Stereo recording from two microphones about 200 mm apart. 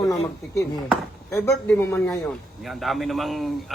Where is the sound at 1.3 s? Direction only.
5° left (ahead or behind).